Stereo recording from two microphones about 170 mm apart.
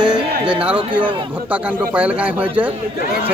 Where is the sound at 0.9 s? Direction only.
10° right (ahead or behind).